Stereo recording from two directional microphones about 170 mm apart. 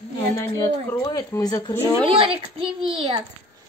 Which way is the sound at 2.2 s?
30° right (ahead or behind).